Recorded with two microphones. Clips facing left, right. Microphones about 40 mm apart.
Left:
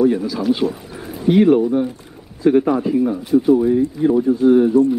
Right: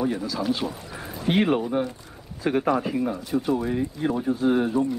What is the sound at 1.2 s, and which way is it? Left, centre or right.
Speech, right.